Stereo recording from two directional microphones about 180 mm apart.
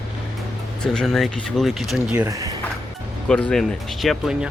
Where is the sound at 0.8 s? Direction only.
Centre (ahead or behind).